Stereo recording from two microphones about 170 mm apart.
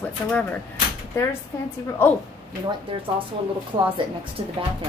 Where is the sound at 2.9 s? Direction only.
35° right (ahead or behind).